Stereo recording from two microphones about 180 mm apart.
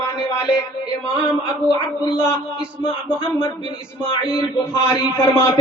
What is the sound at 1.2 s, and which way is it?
Speech, 25° left (ahead or behind).